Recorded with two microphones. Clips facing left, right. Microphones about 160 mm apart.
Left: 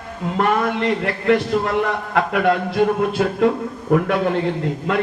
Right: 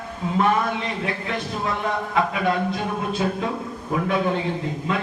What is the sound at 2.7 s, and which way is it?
Speech, 65° left (ahead or behind).